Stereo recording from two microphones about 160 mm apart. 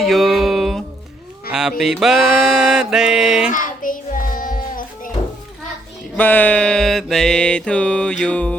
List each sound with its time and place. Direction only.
0.0 s a sound: centre (ahead or behind)
3.5 s child singing: 55° left (ahead or behind)
6.1 s music: 10° left (ahead or behind)